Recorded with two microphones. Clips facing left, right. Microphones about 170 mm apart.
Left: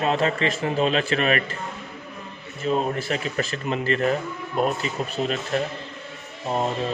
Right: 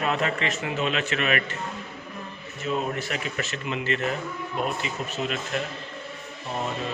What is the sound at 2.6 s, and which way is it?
Speech, 35° left (ahead or behind).